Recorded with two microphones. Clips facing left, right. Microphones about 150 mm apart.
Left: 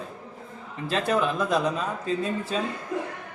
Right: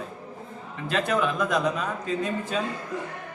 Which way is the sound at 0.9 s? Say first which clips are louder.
Even; 35° left (ahead or behind).